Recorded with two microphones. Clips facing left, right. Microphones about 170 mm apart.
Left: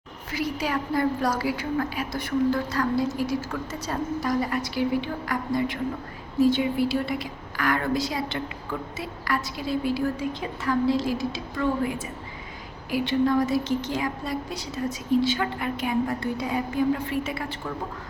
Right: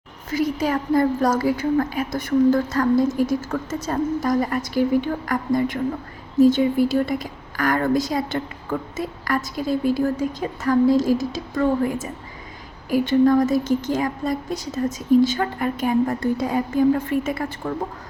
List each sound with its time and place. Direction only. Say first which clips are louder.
0.3 s a woman's voice: right 6 dB; 45° right (ahead or behind)